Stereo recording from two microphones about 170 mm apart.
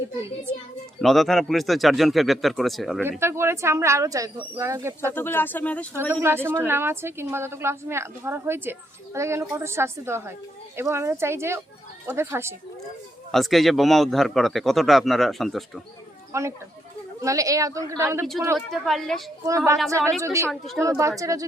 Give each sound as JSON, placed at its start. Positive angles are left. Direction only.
{"t": 1.0, "sound": "a man's voice", "side_deg": 0}
{"t": 3.0, "sound": "speech", "side_deg": -15}
{"t": 5.1, "sound": "speech", "side_deg": 10}
{"t": 6.1, "sound": "speech", "side_deg": -15}
{"t": 13.3, "sound": "a man's voice", "side_deg": 0}
{"t": 16.3, "sound": "speech", "side_deg": -15}
{"t": 18.5, "sound": "a man's voice", "side_deg": 0}
{"t": 19.5, "sound": "speech", "side_deg": -20}